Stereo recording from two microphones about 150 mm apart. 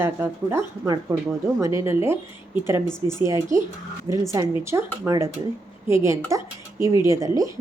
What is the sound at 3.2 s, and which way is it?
A woman's voice, 20° right (ahead or behind).